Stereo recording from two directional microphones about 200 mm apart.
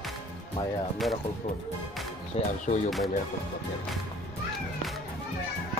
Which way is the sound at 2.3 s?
35° left (ahead or behind).